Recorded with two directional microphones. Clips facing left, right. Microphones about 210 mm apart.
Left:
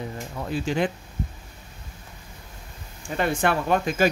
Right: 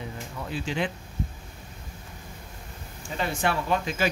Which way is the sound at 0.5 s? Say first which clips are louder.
Left 5 dB; 45° left (ahead or behind).